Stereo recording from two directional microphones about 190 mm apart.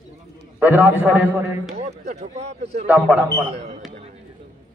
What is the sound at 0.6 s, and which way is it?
A man's voice, 10° right (ahead or behind).